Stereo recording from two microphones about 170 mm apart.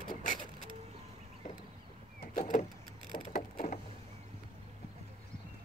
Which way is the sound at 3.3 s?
60° left (ahead or behind).